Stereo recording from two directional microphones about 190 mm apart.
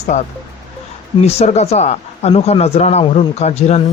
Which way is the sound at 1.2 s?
35° left (ahead or behind).